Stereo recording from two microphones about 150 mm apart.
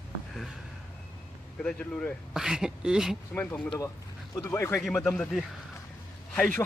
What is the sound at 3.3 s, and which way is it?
Speech, 10° left (ahead or behind).